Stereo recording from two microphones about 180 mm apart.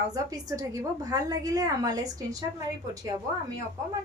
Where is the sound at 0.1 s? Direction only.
20° right (ahead or behind).